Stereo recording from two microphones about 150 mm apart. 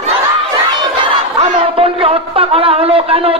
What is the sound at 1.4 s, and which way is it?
Speech, 35° right (ahead or behind).